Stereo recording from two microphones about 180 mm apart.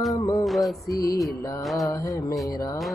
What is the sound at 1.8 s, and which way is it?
Speech, 20° left (ahead or behind).